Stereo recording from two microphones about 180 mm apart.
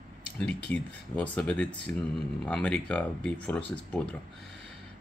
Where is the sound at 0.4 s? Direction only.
5° left (ahead or behind).